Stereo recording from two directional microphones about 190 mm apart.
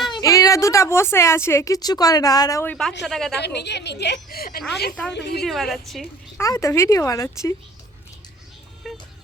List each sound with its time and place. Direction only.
0.1 s a woman's voice: 20° left (ahead or behind); by 3.3 s centre (ahead or behind)
3.4 s a woman's voice: 60° left (ahead or behind)
5.5 s a woman's voice: centre (ahead or behind)
6.4 s a woman's voice: 15° left (ahead or behind)
8.8 s music: centre (ahead or behind)